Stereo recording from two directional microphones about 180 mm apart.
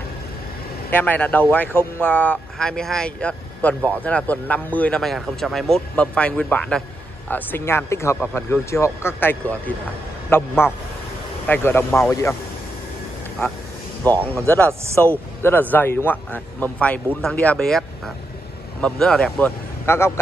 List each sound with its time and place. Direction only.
0.8 s speech: 10° left (ahead or behind)
14.0 s speech: 10° left (ahead or behind)